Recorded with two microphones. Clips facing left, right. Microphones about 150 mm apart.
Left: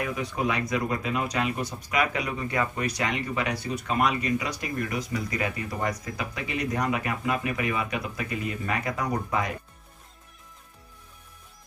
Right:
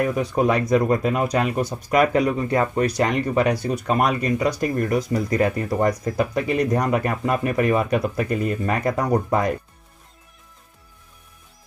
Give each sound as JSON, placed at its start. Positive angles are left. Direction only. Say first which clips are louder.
{"t": 0.0, "sound": "speech", "louder": "right 8 dB", "side_deg": -40}